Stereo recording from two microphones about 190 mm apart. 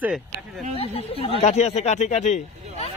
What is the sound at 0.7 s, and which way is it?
Speech, 30° left (ahead or behind).